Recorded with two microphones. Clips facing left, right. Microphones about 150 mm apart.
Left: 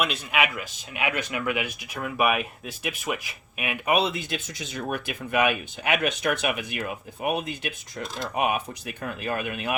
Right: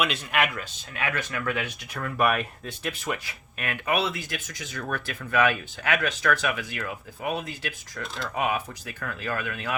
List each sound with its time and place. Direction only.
0.0 s a man's voice: centre (ahead or behind)
0.9 s speech: 15° left (ahead or behind)